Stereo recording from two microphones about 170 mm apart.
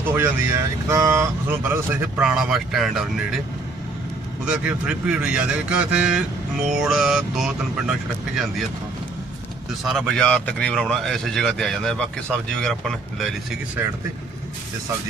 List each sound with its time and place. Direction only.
0.0 s speech: 10° right (ahead or behind)
4.4 s speech: 5° right (ahead or behind)
9.8 s speech: 5° left (ahead or behind)